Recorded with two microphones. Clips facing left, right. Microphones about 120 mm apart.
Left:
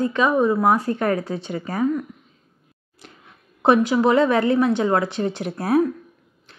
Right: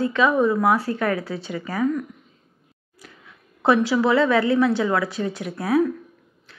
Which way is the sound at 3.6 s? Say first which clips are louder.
Left 2 dB; 20° left (ahead or behind).